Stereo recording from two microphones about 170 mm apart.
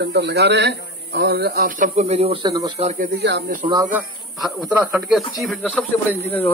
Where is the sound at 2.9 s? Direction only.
55° right (ahead or behind).